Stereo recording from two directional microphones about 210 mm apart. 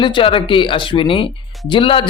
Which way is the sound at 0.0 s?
25° left (ahead or behind).